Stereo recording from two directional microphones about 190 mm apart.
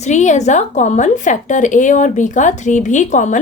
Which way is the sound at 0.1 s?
40° left (ahead or behind).